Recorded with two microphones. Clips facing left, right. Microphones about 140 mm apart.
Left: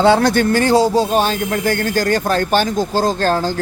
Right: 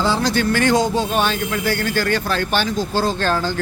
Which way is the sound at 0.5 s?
35° left (ahead or behind).